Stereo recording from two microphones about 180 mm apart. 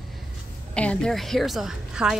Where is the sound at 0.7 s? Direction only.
5° left (ahead or behind).